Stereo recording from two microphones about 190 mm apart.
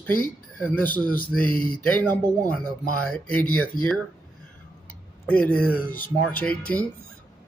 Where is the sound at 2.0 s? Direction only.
10° left (ahead or behind).